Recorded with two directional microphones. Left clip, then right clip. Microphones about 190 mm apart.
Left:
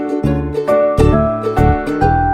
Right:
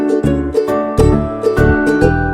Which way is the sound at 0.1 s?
5° right (ahead or behind).